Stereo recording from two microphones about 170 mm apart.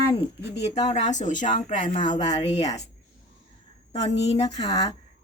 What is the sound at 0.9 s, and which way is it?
Speech, 45° left (ahead or behind).